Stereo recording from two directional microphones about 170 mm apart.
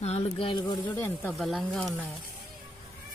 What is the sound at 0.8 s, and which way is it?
Speech, 15° left (ahead or behind).